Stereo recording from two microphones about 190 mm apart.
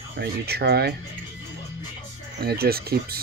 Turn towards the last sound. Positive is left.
turn(degrees=-55)  # may be behind; listen again after turning